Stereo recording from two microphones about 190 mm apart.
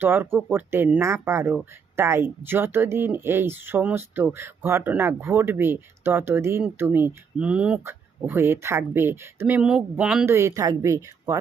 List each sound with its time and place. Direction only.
0.0 s speech: 10° right (ahead or behind)
10.2 s speech: 15° right (ahead or behind)